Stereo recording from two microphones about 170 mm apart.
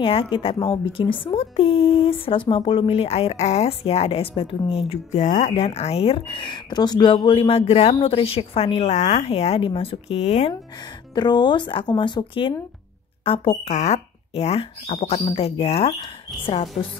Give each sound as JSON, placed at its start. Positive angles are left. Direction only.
{"t": 0.0, "sound": "speech", "side_deg": 30}
{"t": 11.1, "sound": "speech", "side_deg": 25}